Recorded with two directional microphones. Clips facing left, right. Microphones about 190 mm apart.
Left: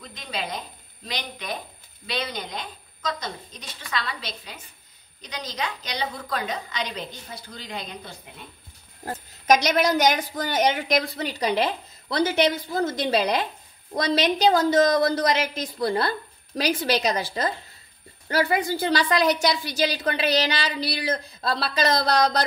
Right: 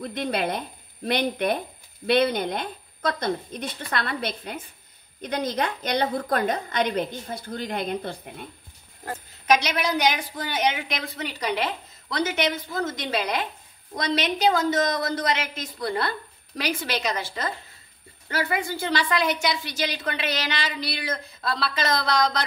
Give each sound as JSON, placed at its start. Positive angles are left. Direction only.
{"t": 0.0, "sound": "a woman's voice", "side_deg": -60}
{"t": 9.0, "sound": "a woman's voice", "side_deg": 45}